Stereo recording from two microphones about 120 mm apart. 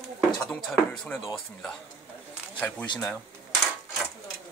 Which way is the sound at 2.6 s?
10° left (ahead or behind).